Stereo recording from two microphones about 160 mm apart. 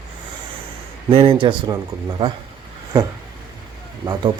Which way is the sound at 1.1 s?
35° right (ahead or behind).